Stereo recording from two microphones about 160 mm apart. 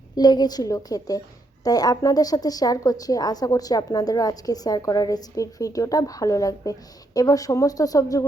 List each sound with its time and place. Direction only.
0.2 s a woman's voice: 25° left (ahead or behind)